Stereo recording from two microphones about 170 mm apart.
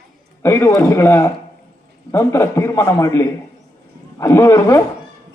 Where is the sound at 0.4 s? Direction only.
15° left (ahead or behind).